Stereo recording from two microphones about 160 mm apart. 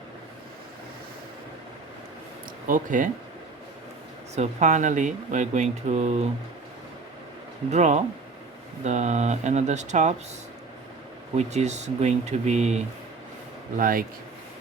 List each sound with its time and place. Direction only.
2.6 s speech: 55° right (ahead or behind)
4.4 s speech: 50° right (ahead or behind)
7.7 s speech: 45° right (ahead or behind)
11.3 s speech: 45° right (ahead or behind)
13.7 s speech: 60° right (ahead or behind)